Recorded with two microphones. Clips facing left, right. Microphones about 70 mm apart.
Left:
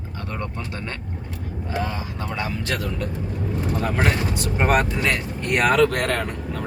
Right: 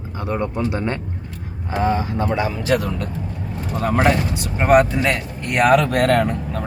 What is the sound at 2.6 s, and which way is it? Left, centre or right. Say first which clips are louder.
Speech: right 6 dB; centre.